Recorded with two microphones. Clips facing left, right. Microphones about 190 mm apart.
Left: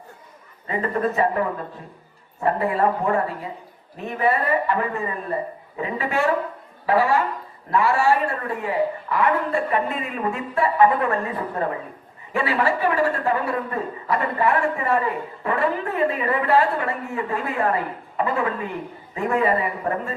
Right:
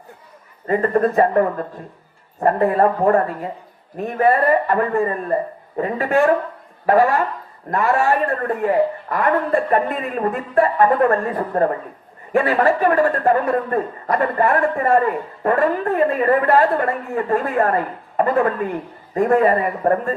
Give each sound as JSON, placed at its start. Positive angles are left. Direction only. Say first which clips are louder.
{"t": 0.7, "sound": "a man's voice", "louder": "right 6 dB", "side_deg": -50}